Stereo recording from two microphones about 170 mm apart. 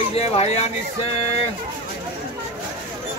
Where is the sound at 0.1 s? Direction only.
35° left (ahead or behind).